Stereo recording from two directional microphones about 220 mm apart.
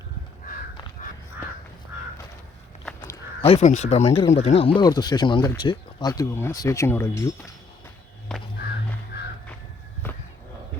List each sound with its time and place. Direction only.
1.0 s crow: 35° left (ahead or behind)
2.8 s livestock: 10° left (ahead or behind)
3.4 s speech: 30° left (ahead or behind); by 7.3 s 10° left (ahead or behind)
8.3 s a sound: 5° left (ahead or behind)